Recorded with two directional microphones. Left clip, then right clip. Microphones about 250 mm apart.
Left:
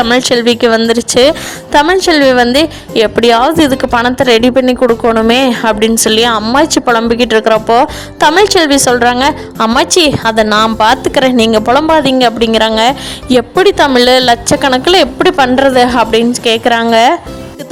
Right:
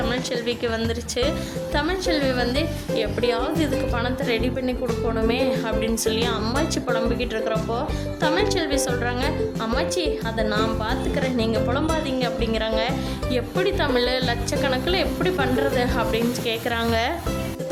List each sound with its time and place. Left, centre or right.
0.0 s speech: right